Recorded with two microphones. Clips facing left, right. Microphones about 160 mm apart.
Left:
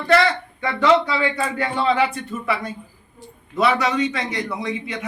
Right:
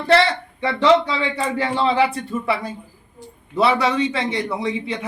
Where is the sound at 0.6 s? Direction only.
30° right (ahead or behind).